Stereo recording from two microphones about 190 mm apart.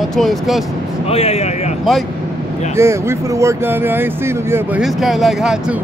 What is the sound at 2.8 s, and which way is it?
Speech, 15° right (ahead or behind).